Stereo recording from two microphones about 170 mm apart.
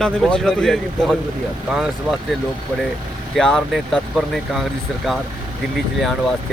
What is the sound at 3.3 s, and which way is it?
Speech, 5° left (ahead or behind).